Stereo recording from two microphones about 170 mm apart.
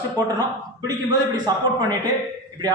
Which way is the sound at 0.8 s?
25° right (ahead or behind).